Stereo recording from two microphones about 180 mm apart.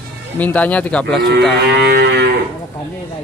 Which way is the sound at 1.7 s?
65° right (ahead or behind).